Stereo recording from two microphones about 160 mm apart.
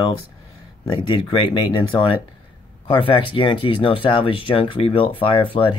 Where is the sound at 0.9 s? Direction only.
30° left (ahead or behind).